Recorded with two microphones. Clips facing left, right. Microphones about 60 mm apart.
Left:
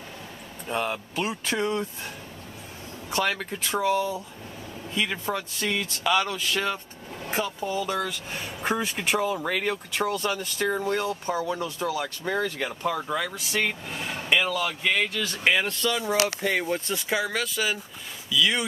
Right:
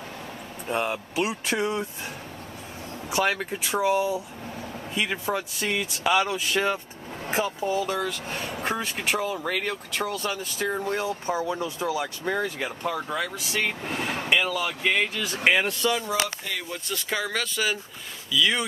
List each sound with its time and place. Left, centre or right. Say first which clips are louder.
0.7 s speech: right 1 dB; centre
3.1 s speech: right 2 dB; centre
7.7 s speech: left 1 dB; centre
13.8 s a sound: right 4 dB; right
14.3 s speech: left 1 dB; centre
16.4 s speech: left 7 dB; left
16.9 s speech: right 3 dB; centre